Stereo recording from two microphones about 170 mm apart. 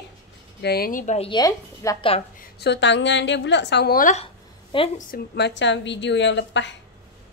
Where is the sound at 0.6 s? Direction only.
65° left (ahead or behind); by 1.3 s 45° left (ahead or behind).